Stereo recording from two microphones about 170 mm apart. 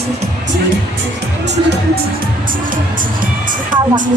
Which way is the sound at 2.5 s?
55° right (ahead or behind).